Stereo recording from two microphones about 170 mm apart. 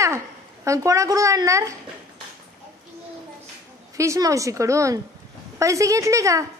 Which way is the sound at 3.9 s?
20° right (ahead or behind).